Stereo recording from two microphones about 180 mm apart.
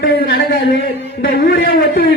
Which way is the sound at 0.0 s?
55° left (ahead or behind).